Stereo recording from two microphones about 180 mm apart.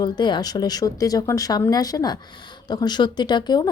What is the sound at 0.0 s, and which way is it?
A woman's voice, 25° left (ahead or behind).